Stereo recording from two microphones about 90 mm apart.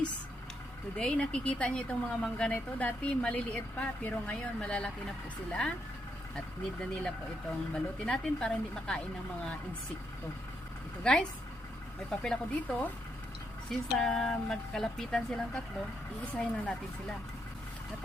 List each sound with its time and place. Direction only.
0.9 s a woman's voice: 5° left (ahead or behind)
7.7 s a woman's voice: 10° left (ahead or behind)
11.0 s a woman's voice: 10° left (ahead or behind)
13.7 s a woman's voice: 5° left (ahead or behind)